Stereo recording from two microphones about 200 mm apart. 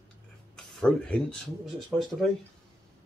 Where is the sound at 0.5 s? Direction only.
5° left (ahead or behind).